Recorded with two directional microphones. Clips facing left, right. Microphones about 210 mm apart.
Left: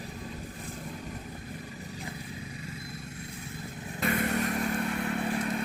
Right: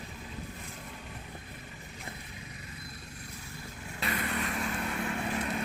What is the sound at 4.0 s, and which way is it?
Vehicle, 45° left (ahead or behind).